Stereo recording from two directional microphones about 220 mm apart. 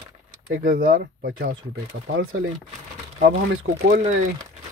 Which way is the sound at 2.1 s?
65° right (ahead or behind).